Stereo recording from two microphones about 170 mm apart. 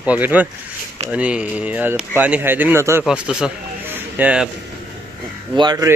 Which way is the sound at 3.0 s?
5° right (ahead or behind).